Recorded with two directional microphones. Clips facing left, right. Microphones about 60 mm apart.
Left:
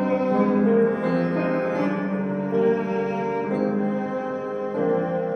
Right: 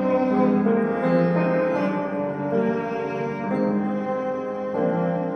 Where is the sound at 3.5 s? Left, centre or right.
Right.